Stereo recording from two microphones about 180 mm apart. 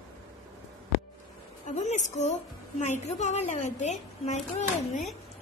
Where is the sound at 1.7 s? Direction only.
40° left (ahead or behind).